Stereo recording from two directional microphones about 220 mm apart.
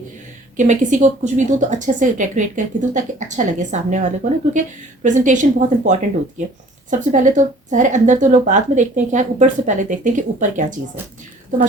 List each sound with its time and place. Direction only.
0.5 s a woman's voice: 35° right (ahead or behind)